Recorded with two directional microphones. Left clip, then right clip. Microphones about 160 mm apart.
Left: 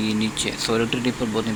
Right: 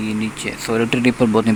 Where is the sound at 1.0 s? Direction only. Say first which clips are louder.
Right 8 dB; 40° right (ahead or behind).